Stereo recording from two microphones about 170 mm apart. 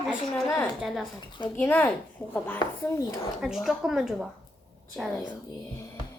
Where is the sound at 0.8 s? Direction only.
Centre (ahead or behind).